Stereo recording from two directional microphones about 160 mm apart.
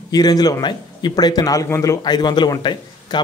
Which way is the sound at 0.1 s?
25° left (ahead or behind).